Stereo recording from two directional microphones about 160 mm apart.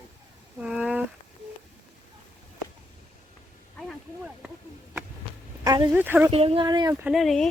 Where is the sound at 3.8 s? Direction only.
5° right (ahead or behind).